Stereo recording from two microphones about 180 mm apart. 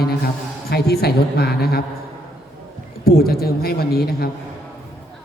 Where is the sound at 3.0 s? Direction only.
55° left (ahead or behind).